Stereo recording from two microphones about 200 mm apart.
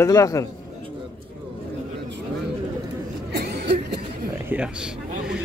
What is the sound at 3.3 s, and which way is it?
Cough, 55° right (ahead or behind).